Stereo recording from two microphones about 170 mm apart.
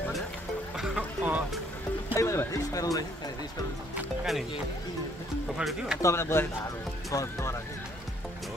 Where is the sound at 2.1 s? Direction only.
15° left (ahead or behind).